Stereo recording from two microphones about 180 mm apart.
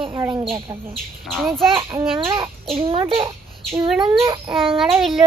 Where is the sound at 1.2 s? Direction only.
Centre (ahead or behind).